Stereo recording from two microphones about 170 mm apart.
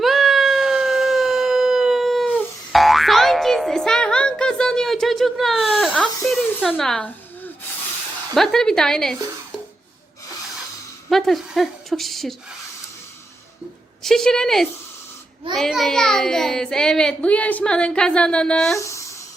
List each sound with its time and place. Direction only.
0.0 s a sound: centre (ahead or behind)
2.7 s boing: centre (ahead or behind)
8.4 s a child's voice: 5° left (ahead or behind)
11.1 s a woman's voice: centre (ahead or behind)
14.0 s a child's voice: 5° left (ahead or behind)
18.8 s a sound: 20° left (ahead or behind)